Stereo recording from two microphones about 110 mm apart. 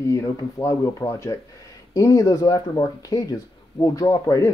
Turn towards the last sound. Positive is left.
turn(degrees=30)  # may be behind; listen again after turning